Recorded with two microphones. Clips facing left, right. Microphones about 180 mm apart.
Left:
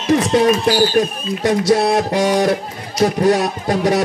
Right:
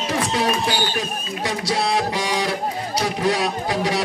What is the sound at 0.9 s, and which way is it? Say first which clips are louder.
A man's voice: left 9 dB; 45° left (ahead or behind).